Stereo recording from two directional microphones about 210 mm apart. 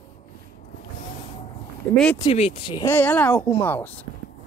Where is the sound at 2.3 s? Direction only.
30° left (ahead or behind).